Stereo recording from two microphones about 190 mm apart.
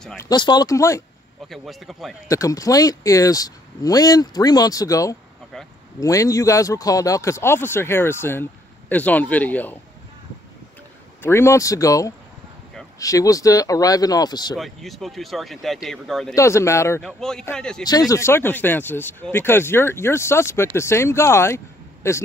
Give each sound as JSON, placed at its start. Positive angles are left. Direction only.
{"t": 0.2, "sound": "speech", "side_deg": 20}
{"t": 1.5, "sound": "speech", "side_deg": 0}
{"t": 2.2, "sound": "speech", "side_deg": 15}
{"t": 11.2, "sound": "speech", "side_deg": 15}
{"t": 14.6, "sound": "speech", "side_deg": 0}
{"t": 16.3, "sound": "speech", "side_deg": 15}
{"t": 17.2, "sound": "speech", "side_deg": 5}
{"t": 17.8, "sound": "speech", "side_deg": 20}